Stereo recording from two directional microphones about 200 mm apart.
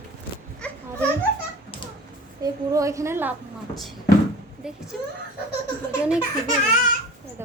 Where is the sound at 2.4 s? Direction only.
15° right (ahead or behind).